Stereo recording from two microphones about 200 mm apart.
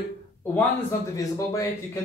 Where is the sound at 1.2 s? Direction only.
15° left (ahead or behind).